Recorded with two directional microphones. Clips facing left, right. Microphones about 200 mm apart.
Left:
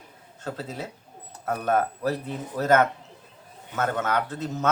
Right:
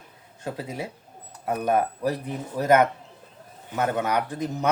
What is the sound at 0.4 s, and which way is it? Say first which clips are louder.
Speech: right 1 dB; 15° right (ahead or behind).